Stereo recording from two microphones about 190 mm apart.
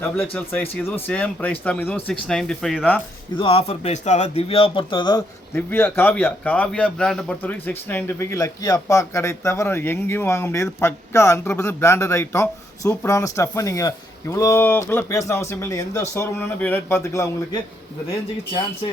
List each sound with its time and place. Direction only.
0.2 s a man's voice: 10° left (ahead or behind)
3.3 s speech: 30° left (ahead or behind)
5.5 s a man's voice: 10° left (ahead or behind)